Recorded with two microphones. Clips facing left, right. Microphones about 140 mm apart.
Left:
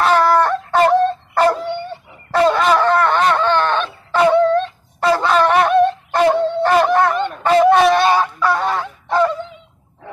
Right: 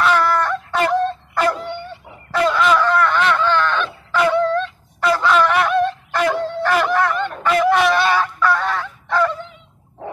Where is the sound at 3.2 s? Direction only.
40° left (ahead or behind).